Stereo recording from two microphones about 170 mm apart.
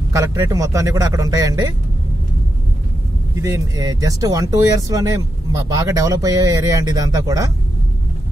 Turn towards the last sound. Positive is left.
turn(degrees=-20)  # may be behind; listen again after turning